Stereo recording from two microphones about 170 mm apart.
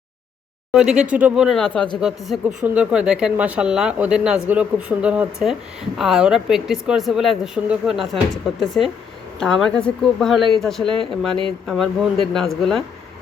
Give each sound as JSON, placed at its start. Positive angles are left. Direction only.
{"t": 0.7, "sound": "speech", "side_deg": -5}